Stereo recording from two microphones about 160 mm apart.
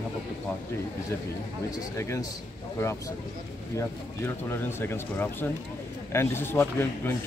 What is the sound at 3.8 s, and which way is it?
Speech, 15° left (ahead or behind).